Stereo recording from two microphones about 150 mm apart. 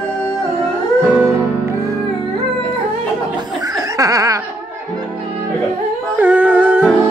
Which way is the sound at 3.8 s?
25° right (ahead or behind).